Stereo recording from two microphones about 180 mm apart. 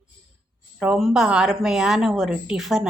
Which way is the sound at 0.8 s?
5° right (ahead or behind).